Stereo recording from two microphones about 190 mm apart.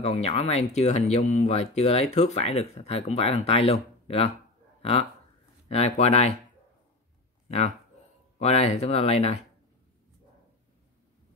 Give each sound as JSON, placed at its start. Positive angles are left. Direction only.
{"t": 0.0, "sound": "speech", "side_deg": 35}
{"t": 5.7, "sound": "speech", "side_deg": 35}
{"t": 7.4, "sound": "speech", "side_deg": 35}